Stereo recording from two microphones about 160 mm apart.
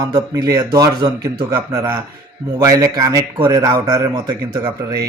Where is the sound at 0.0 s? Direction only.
25° right (ahead or behind).